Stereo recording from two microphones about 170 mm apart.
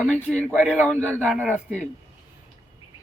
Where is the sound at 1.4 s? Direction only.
5° right (ahead or behind).